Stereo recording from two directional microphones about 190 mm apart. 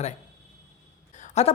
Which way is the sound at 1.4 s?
35° left (ahead or behind).